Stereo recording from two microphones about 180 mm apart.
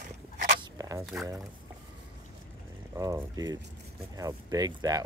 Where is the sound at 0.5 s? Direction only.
20° right (ahead or behind).